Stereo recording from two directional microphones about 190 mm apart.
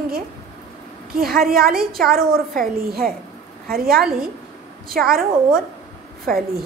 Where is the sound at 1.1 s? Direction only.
50° right (ahead or behind).